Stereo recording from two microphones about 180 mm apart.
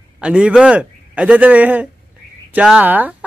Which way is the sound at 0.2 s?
5° right (ahead or behind).